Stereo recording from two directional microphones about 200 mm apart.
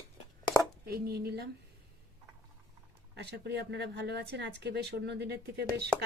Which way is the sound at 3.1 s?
60° right (ahead or behind).